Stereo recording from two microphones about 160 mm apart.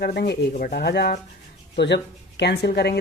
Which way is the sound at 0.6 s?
75° left (ahead or behind).